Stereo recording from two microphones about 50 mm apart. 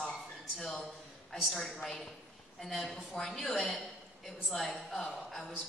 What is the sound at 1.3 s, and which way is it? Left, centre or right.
A woman's voice, centre.